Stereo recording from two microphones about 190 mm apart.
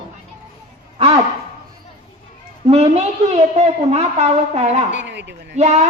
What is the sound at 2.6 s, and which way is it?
A woman's voice, 35° right (ahead or behind).